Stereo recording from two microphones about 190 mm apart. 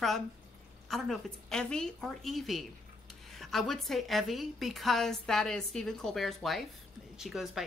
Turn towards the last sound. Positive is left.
turn(degrees=0)  # may be behind; listen again after turning